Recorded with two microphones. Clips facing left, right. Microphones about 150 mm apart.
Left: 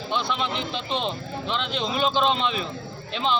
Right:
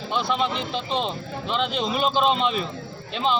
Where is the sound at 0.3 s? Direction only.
5° right (ahead or behind).